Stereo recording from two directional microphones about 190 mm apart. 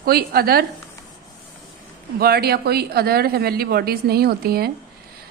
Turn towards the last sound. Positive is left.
turn(degrees=-55)  # may be behind; listen again after turning